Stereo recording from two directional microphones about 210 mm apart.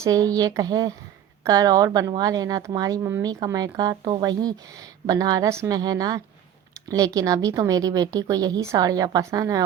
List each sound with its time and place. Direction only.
0.0 s a woman's voice: 15° right (ahead or behind)